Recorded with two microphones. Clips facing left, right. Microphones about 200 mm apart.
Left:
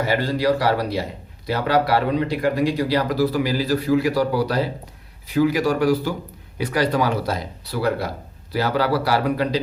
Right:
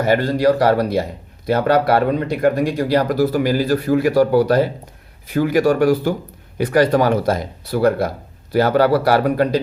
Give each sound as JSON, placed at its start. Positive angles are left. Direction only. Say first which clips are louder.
{"t": 0.0, "sound": "speech", "louder": "right 5 dB", "side_deg": -50}